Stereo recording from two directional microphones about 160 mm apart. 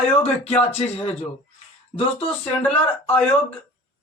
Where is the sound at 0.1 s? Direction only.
40° left (ahead or behind).